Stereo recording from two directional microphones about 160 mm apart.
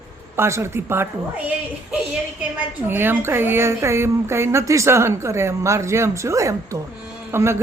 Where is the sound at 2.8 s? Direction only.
15° right (ahead or behind).